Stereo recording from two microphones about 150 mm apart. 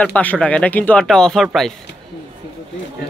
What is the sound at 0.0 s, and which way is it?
Speech, 10° left (ahead or behind).